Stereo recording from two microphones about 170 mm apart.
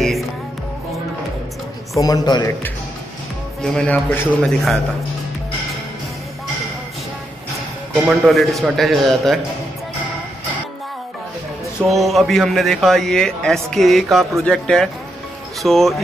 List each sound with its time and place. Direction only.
2.0 s a man's voice: 20° left (ahead or behind)
3.6 s a man's voice: 5° left (ahead or behind)
7.9 s a man's voice: centre (ahead or behind)
11.9 s a man's voice: centre (ahead or behind)